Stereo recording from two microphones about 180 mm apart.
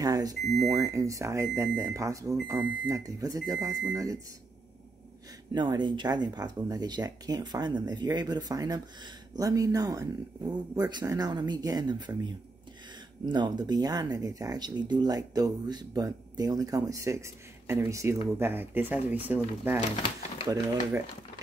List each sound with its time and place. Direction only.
0.0 s speech: 20° right (ahead or behind)
5.5 s speech: 25° right (ahead or behind)
13.2 s speech: 25° right (ahead or behind)